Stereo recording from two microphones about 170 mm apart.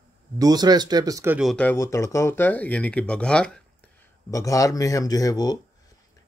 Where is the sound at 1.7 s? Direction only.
15° left (ahead or behind).